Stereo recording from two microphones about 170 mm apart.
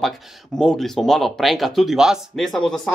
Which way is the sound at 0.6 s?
5° left (ahead or behind).